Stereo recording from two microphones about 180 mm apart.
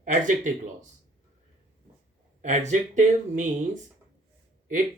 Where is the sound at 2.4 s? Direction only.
40° right (ahead or behind).